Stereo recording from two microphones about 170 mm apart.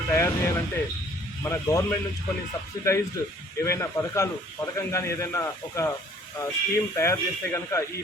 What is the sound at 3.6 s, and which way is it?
Speech, 15° left (ahead or behind).